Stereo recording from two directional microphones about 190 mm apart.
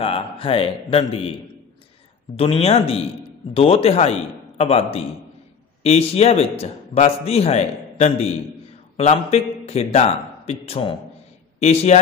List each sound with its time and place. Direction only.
0.0 s a man's voice: 30° left (ahead or behind)
2.3 s a man's voice: 30° left (ahead or behind)